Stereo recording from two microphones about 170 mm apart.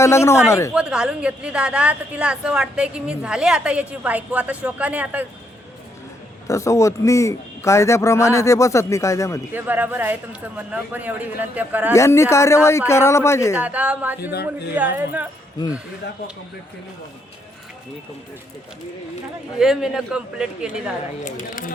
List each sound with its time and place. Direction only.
0.0 s a man's voice: 15° left (ahead or behind)
0.7 s a woman's voice: 5° right (ahead or behind)
6.5 s a man's voice: 20° left (ahead or behind)
9.6 s a woman's voice: 10° right (ahead or behind)
11.9 s a man's voice: 15° left (ahead or behind)
13.6 s a woman's voice: 10° right (ahead or behind)
19.5 s a man's voice: 5° right (ahead or behind)
21.2 s speech: 50° left (ahead or behind)